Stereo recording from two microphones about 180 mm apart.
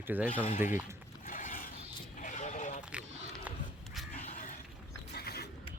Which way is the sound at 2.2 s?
45° left (ahead or behind).